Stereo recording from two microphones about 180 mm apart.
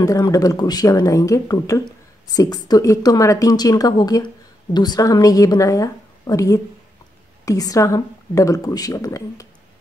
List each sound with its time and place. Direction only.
0.0 s a woman's voice: 20° left (ahead or behind)